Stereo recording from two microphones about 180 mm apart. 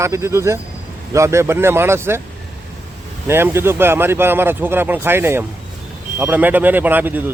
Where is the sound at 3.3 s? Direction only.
15° right (ahead or behind).